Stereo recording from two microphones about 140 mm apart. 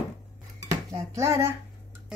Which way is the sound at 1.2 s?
20° right (ahead or behind).